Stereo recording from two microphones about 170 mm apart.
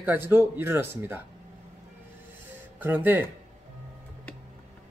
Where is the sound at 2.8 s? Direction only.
10° right (ahead or behind).